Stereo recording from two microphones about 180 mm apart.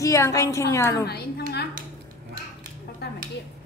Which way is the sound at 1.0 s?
65° left (ahead or behind).